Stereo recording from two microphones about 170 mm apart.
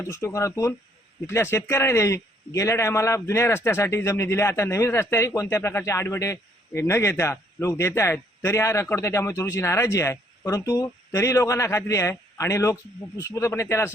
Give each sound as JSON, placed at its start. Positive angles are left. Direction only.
{"t": 0.0, "sound": "a man's voice", "side_deg": 15}